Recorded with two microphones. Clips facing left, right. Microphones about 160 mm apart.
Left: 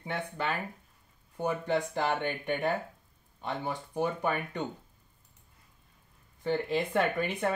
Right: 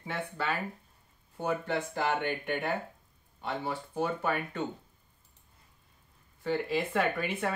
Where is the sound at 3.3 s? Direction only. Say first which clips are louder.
Even; 15° left (ahead or behind).